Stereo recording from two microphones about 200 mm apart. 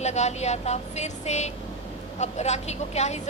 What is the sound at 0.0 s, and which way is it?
A woman's voice, 35° left (ahead or behind).